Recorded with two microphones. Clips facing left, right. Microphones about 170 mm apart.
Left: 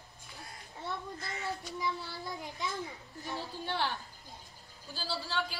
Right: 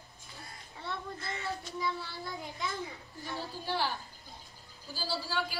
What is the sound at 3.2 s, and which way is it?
A woman's voice, centre (ahead or behind).